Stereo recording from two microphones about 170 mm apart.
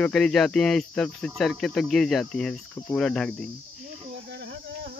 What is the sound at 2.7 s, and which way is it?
Cricket, 15° left (ahead or behind).